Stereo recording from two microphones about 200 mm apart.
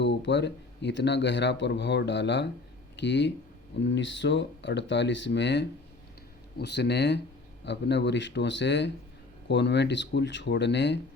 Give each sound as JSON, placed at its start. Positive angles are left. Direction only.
{"t": 0.0, "sound": "speech", "side_deg": 60}